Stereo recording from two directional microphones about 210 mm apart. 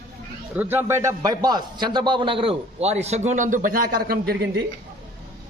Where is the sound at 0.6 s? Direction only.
10° right (ahead or behind); by 4.6 s 50° right (ahead or behind).